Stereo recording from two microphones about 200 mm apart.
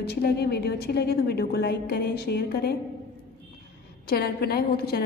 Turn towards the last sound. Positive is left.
turn(degrees=50)  # may be behind; listen again after turning